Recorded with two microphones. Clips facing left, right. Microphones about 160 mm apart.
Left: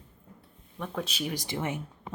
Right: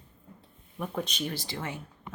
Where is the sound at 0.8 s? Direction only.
Centre (ahead or behind).